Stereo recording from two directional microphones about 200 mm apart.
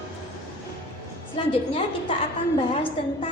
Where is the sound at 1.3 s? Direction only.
25° left (ahead or behind).